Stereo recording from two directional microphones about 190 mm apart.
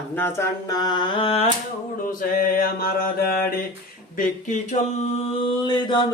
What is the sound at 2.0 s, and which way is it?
Mantra, 50° left (ahead or behind).